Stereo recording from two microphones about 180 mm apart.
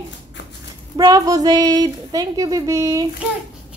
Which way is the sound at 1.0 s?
20° right (ahead or behind).